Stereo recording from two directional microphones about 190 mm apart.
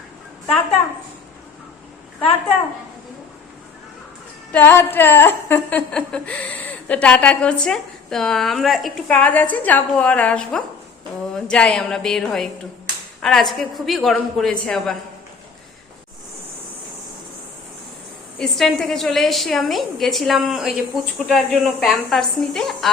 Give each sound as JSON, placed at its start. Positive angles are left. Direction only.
{"t": 4.5, "sound": "a woman's voice", "side_deg": 10}
{"t": 18.3, "sound": "a woman's voice", "side_deg": 0}